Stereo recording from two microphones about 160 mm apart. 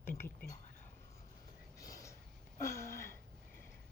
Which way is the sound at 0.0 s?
15° left (ahead or behind).